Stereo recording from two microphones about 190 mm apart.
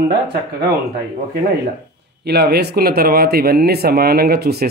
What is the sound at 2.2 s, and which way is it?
Speech, 55° right (ahead or behind).